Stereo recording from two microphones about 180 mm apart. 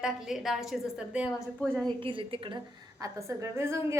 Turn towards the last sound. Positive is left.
turn(degrees=-15)  # may be behind; listen again after turning